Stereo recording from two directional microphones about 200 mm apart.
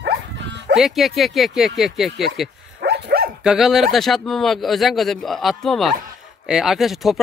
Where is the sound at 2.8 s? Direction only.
55° right (ahead or behind).